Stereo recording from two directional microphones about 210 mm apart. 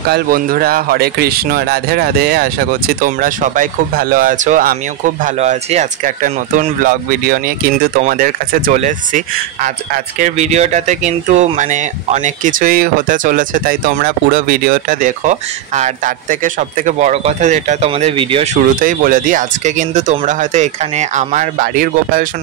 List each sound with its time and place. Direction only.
0.1 s speech: 45° right (ahead or behind)